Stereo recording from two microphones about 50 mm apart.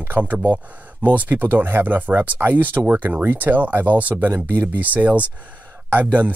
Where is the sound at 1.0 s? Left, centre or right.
Right.